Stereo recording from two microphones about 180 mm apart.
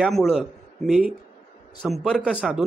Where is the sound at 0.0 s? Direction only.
Centre (ahead or behind).